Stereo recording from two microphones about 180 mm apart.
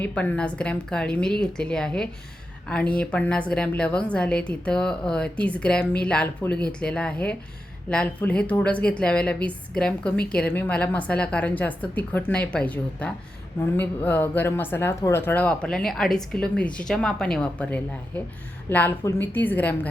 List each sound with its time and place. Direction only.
0.0 s a woman's voice: 5° left (ahead or behind)